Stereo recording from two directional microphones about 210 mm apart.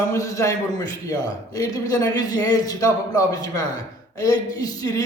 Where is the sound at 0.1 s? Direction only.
15° left (ahead or behind).